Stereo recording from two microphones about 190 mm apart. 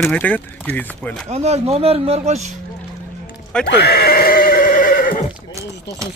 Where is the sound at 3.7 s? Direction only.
60° left (ahead or behind).